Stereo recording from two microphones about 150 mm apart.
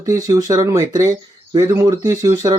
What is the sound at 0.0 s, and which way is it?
Speech, 25° right (ahead or behind).